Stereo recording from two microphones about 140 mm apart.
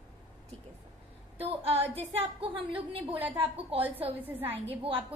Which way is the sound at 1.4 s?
45° right (ahead or behind).